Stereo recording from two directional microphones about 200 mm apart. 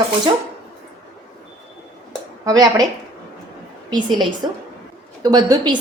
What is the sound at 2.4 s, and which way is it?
Speech, 20° right (ahead or behind).